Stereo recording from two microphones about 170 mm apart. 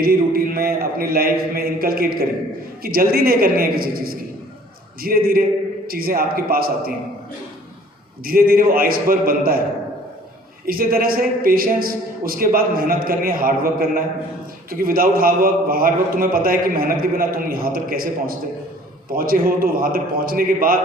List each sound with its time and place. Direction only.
0.0 s a man's voice: 60° right (ahead or behind)
8.2 s a man's voice: 60° right (ahead or behind)
10.7 s a man's voice: 60° right (ahead or behind)